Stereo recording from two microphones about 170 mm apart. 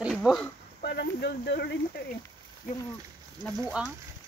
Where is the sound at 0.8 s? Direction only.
75° left (ahead or behind).